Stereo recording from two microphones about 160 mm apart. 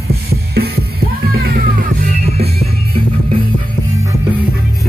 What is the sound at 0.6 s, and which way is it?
Music, 70° right (ahead or behind).